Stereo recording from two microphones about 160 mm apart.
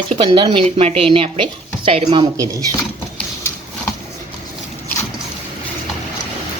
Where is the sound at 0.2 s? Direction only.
30° right (ahead or behind).